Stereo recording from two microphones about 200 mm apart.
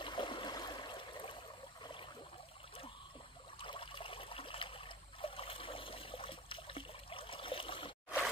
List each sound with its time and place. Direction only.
0.0 s stream: 25° left (ahead or behind)
1.8 s a sound: 25° left (ahead or behind)
3.5 s trickle: 25° left (ahead or behind)